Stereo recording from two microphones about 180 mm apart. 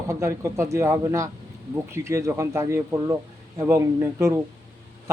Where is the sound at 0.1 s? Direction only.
15° right (ahead or behind).